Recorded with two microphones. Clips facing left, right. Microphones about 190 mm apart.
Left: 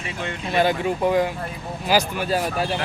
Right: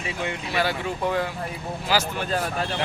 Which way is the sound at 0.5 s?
20° left (ahead or behind).